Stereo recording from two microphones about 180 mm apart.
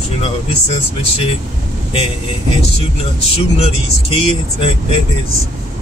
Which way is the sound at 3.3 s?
35° left (ahead or behind).